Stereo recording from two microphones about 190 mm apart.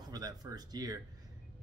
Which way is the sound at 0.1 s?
20° right (ahead or behind).